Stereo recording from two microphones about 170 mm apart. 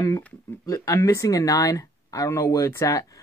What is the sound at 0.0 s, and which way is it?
Speech, 15° left (ahead or behind).